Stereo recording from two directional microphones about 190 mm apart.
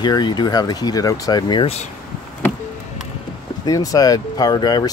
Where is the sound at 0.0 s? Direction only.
25° left (ahead or behind).